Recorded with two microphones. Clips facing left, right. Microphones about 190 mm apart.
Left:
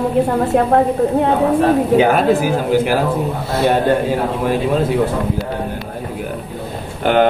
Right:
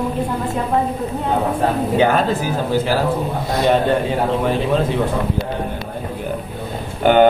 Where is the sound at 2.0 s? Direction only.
10° left (ahead or behind).